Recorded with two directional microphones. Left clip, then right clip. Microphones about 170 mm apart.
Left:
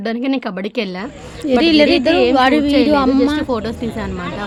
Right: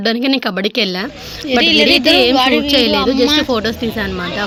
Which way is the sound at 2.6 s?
10° right (ahead or behind).